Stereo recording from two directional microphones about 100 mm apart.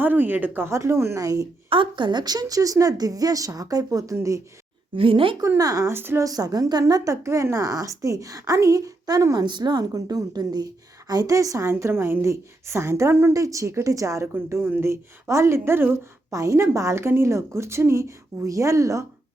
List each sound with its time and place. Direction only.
0.0 s a woman's voice: 20° right (ahead or behind); by 1.5 s 35° right (ahead or behind)
1.7 s a woman's voice: 55° right (ahead or behind); by 4.4 s 30° right (ahead or behind)
4.9 s speech: 65° right (ahead or behind)
5.4 s a woman's voice: 35° right (ahead or behind)
5.9 s a woman's voice: 25° right (ahead or behind)
6.2 s a woman's voice: 40° right (ahead or behind)
14.3 s a woman's voice: 20° right (ahead or behind)